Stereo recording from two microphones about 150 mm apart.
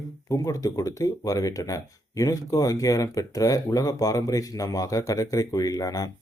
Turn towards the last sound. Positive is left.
turn(degrees=25)  # may be behind; listen again after turning